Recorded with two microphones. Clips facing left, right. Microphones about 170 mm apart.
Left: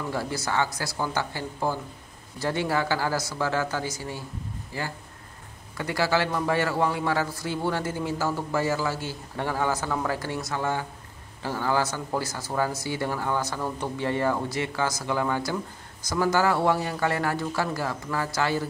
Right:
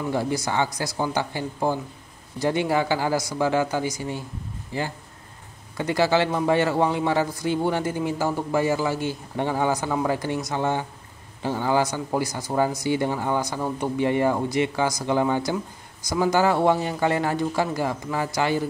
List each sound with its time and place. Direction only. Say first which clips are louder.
0.1 s a man's voice: right 4 dB; 20° right (ahead or behind)